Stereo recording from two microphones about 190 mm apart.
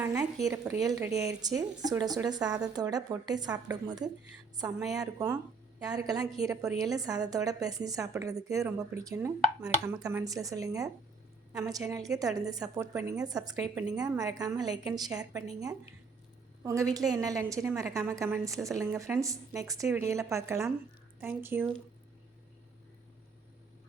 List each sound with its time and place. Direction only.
0.4 s a woman's voice: 15° right (ahead or behind)
13.6 s speech: 5° right (ahead or behind)
13.9 s a woman's voice: 20° right (ahead or behind)
16.6 s speech: 15° right (ahead or behind)